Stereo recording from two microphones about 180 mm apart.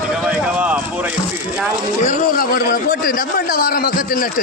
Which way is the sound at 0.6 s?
10° right (ahead or behind).